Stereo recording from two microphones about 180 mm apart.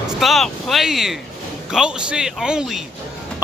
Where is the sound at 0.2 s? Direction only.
Centre (ahead or behind).